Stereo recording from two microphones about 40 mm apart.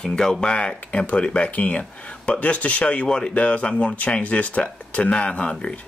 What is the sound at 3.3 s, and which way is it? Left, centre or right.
Speech, left.